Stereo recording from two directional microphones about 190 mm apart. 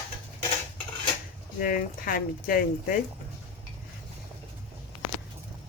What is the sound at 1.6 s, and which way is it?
Speech, 50° left (ahead or behind).